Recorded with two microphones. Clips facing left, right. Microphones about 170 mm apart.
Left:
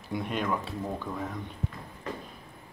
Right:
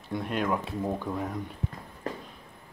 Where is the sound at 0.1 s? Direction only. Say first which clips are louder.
Right 2 dB; centre (ahead or behind).